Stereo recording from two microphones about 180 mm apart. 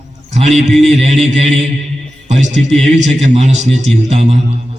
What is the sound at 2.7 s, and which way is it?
A man's voice, 40° right (ahead or behind).